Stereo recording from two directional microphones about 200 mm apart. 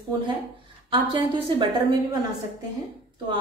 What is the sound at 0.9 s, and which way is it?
Speech, 25° right (ahead or behind).